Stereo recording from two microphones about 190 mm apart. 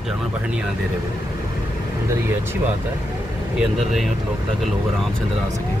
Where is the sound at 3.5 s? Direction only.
Centre (ahead or behind).